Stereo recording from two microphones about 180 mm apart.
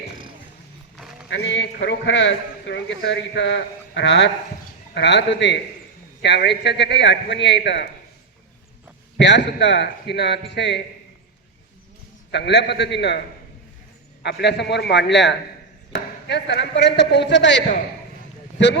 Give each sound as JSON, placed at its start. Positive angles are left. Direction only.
{"t": 0.9, "sound": "a sound", "side_deg": 0}
{"t": 1.3, "sound": "a man's voice", "side_deg": 75}
{"t": 9.1, "sound": "a man's voice", "side_deg": 75}
{"t": 12.3, "sound": "a man's voice", "side_deg": 75}
{"t": 14.2, "sound": "a man's voice", "side_deg": 65}